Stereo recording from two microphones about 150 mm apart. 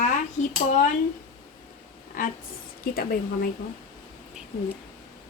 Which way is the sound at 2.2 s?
65° left (ahead or behind).